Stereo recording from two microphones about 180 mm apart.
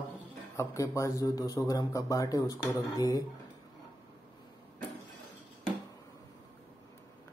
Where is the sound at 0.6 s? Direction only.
15° left (ahead or behind).